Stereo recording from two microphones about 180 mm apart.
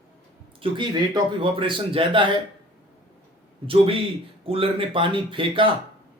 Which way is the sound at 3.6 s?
30° right (ahead or behind).